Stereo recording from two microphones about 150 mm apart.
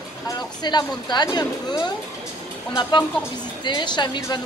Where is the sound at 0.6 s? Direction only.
30° left (ahead or behind).